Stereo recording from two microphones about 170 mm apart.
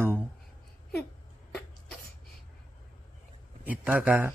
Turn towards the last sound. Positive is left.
turn(degrees=-10)  # may be behind; listen again after turning